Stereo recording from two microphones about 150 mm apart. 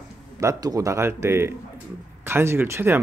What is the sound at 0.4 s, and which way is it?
Speech, 20° right (ahead or behind).